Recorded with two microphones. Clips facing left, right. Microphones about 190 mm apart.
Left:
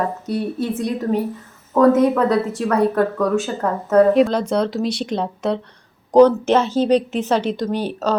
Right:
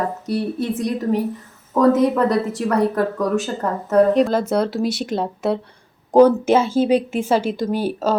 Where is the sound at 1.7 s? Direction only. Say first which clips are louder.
Left 1 dB; centre (ahead or behind).